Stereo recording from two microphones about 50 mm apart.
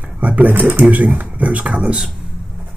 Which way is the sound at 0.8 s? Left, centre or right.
Right.